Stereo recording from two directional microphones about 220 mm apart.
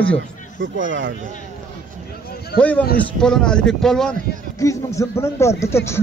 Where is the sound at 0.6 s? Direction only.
60° right (ahead or behind).